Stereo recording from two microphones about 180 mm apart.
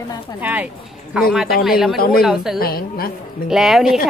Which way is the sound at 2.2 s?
Centre (ahead or behind).